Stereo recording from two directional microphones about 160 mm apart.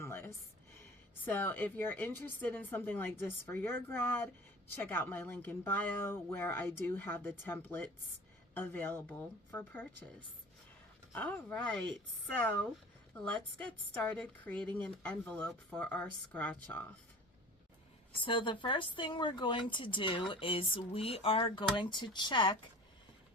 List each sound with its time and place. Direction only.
0.0 s a sound: 15° left (ahead or behind)
1.2 s speech: 10° left (ahead or behind)
11.1 s speech: 10° left (ahead or behind)
18.2 s a woman's voice: 30° left (ahead or behind)